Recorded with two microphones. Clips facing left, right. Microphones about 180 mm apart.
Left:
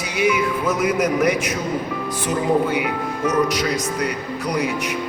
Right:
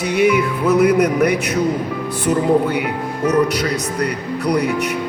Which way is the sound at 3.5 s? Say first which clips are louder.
Right 1 dB; 65° right (ahead or behind).